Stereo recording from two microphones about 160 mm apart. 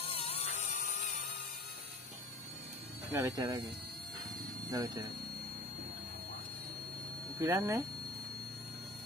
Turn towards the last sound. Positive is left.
turn(degrees=-20)  # may be behind; listen again after turning